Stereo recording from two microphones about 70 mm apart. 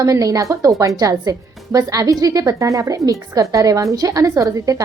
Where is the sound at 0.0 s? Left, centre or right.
Right.